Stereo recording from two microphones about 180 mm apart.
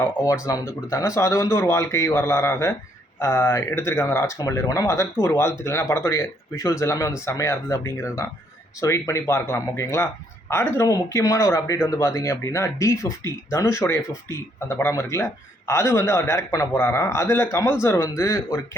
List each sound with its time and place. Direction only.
0.0 s a man's voice: 15° left (ahead or behind)